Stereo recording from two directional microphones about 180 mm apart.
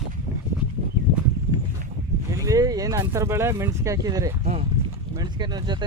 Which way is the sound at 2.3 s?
20° right (ahead or behind).